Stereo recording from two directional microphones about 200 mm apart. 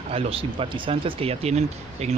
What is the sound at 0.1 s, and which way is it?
Speech, 25° right (ahead or behind).